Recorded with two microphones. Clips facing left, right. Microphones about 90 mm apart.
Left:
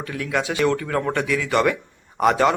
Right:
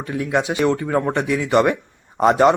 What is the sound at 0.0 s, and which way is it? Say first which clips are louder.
Speech: right 4 dB; 20° right (ahead or behind).